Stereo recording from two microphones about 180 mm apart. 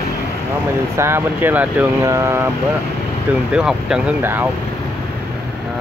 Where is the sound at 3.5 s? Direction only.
5° right (ahead or behind).